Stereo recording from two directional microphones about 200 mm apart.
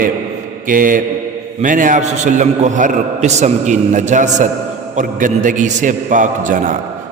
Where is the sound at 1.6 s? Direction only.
40° right (ahead or behind).